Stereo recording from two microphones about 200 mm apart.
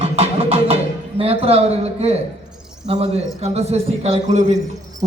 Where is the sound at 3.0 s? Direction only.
30° right (ahead or behind).